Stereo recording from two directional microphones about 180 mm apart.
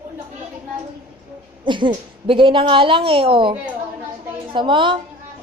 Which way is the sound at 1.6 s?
25° right (ahead or behind).